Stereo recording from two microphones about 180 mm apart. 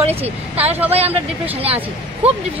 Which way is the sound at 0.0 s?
35° right (ahead or behind).